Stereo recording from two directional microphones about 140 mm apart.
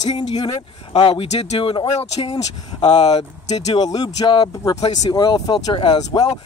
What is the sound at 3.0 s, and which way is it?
Speech, 50° left (ahead or behind).